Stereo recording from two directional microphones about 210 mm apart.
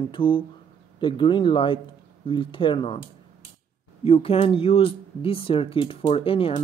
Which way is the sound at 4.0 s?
25° left (ahead or behind).